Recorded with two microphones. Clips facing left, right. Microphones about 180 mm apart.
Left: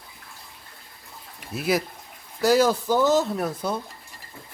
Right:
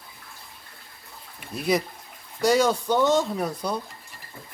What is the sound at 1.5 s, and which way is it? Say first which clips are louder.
Speech: even; 5° left (ahead or behind).